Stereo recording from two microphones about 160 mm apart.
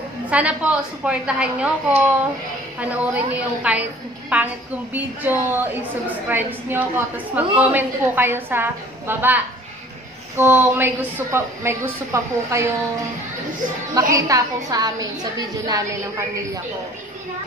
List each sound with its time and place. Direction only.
0.3 s a woman's voice: 10° right (ahead or behind)
14.1 s a woman's voice: 20° right (ahead or behind)